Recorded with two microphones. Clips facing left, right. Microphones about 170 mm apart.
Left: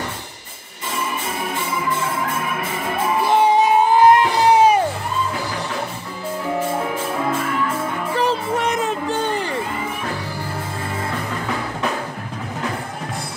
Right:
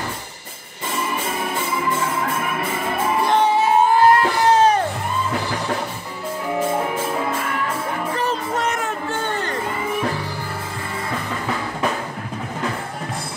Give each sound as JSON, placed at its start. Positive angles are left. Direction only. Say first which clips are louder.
{"t": 3.5, "sound": "music", "louder": "left 1 dB", "side_deg": 15}
{"t": 8.5, "sound": "music", "louder": "left 2 dB", "side_deg": 15}